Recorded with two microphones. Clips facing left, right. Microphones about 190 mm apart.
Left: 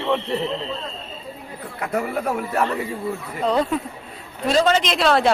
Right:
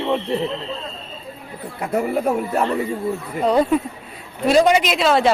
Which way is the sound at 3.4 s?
10° right (ahead or behind).